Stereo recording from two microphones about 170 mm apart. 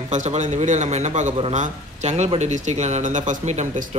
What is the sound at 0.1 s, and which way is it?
A man's voice, 45° right (ahead or behind).